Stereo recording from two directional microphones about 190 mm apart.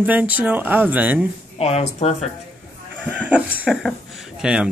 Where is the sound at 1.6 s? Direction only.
35° left (ahead or behind).